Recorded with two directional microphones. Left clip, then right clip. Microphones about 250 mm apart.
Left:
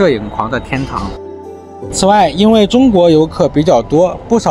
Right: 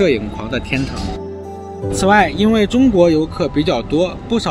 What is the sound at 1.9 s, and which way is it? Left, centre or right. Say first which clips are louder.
Speech: left 3 dB; centre.